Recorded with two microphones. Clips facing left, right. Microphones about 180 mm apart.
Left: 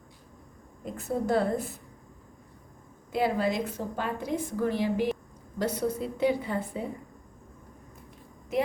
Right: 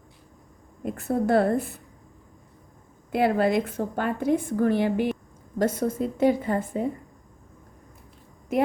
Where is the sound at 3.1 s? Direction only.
60° right (ahead or behind).